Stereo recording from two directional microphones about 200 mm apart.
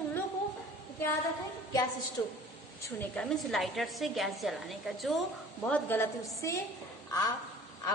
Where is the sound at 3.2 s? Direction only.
Centre (ahead or behind).